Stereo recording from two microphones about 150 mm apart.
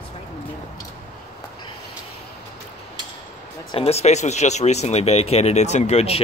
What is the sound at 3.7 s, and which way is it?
Speech, 40° left (ahead or behind).